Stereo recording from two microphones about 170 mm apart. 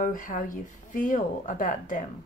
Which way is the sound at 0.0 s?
50° left (ahead or behind).